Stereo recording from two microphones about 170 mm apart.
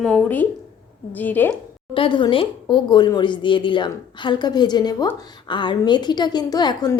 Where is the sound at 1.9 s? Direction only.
30° left (ahead or behind).